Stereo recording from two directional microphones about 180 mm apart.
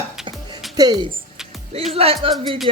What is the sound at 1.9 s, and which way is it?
Speech, 35° right (ahead or behind).